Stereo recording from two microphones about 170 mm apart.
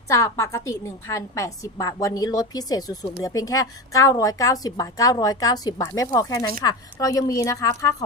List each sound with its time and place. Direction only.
0.1 s a woman's voice: 20° left (ahead or behind)